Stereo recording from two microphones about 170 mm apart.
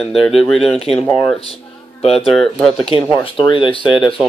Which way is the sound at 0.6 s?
35° left (ahead or behind).